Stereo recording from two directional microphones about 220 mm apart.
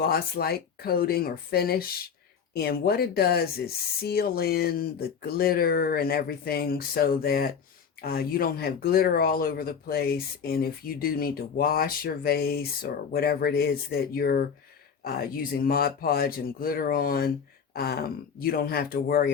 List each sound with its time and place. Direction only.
0.0 s speech: 45° left (ahead or behind)